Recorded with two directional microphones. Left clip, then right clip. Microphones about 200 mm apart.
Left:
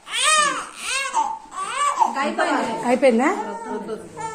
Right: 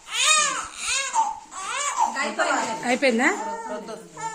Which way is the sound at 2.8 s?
15° right (ahead or behind).